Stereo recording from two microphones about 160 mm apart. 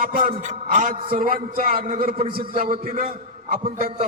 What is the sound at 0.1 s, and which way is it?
A man's voice, 55° right (ahead or behind).